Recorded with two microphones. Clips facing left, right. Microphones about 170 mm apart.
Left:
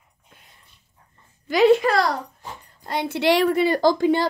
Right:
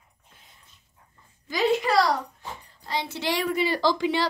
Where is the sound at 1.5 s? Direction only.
60° left (ahead or behind).